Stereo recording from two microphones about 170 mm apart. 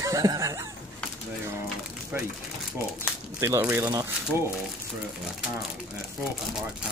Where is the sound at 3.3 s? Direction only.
15° right (ahead or behind).